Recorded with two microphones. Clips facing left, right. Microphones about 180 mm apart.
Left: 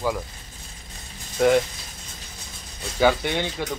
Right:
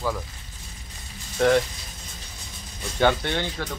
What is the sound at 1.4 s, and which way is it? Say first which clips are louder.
Speech: left 1 dB; 10° left (ahead or behind).